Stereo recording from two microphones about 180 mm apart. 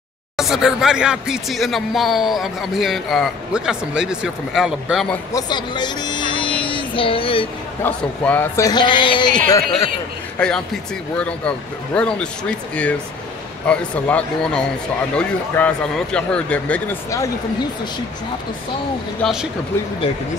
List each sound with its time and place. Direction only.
0.4 s speech: centre (ahead or behind)
5.3 s speech: 25° left (ahead or behind)
7.8 s speech: 10° left (ahead or behind)
10.4 s speech: 5° left (ahead or behind)
19.2 s speech: 5° left (ahead or behind)